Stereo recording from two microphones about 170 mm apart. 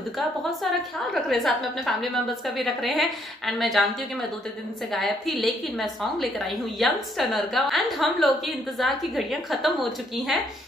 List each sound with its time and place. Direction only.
1.1 s a woman's voice: centre (ahead or behind)
4.9 s a woman's voice: centre (ahead or behind)